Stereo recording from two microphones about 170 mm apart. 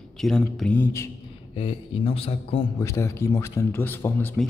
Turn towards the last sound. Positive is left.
turn(degrees=10)  # may be behind; listen again after turning